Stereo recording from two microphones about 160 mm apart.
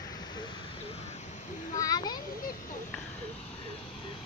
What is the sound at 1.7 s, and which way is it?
Children playing, 25° left (ahead or behind).